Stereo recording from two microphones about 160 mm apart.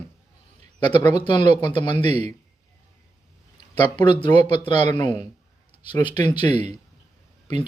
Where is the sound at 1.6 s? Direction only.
30° left (ahead or behind).